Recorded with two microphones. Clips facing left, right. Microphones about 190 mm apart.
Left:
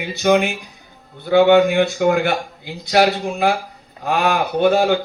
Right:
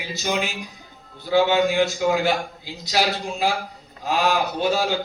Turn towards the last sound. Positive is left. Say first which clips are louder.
# left 7 dB
turn(degrees=55)  # may be behind; listen again after turning